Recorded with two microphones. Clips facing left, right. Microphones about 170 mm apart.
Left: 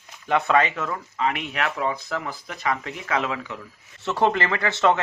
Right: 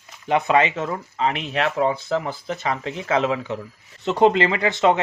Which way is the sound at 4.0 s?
20° right (ahead or behind).